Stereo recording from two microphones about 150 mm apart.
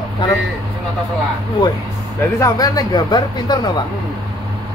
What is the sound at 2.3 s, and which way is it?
Speech, 25° left (ahead or behind).